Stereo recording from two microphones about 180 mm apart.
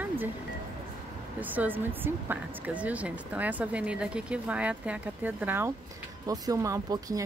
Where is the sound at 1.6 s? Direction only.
10° right (ahead or behind).